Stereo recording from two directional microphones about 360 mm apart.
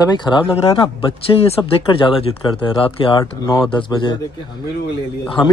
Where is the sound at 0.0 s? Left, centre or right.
Centre.